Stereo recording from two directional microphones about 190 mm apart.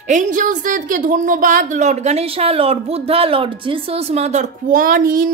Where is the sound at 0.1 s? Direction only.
40° right (ahead or behind).